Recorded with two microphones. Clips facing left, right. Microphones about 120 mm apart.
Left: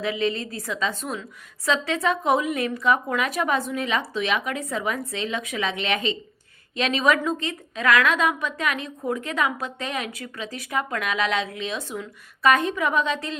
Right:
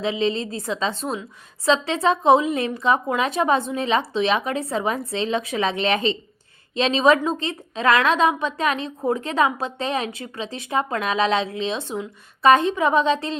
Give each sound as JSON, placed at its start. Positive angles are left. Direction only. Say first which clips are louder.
{"t": 0.0, "sound": "a woman's voice", "louder": "right 3 dB", "side_deg": -25}